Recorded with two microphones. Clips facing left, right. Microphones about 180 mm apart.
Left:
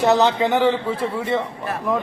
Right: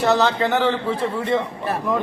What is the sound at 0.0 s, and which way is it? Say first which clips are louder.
A man's voice: left 2 dB; 15° left (ahead or behind).